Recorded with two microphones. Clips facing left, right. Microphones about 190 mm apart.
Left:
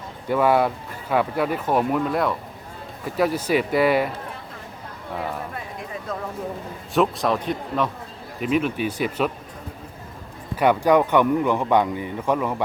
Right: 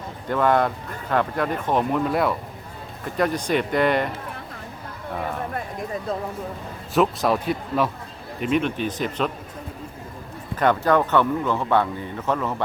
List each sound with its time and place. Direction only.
0.3 s speech: 10° left (ahead or behind)
6.1 s speech: 30° right (ahead or behind)
6.9 s speech: centre (ahead or behind)
10.6 s speech: 10° left (ahead or behind)